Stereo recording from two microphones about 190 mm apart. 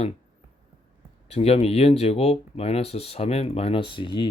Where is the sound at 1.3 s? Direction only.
35° left (ahead or behind).